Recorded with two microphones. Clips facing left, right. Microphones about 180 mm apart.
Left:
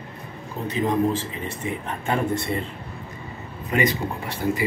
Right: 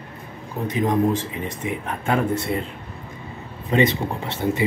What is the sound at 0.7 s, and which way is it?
Speech, 15° right (ahead or behind).